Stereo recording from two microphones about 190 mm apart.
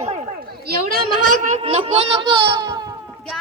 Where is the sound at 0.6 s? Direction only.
50° right (ahead or behind).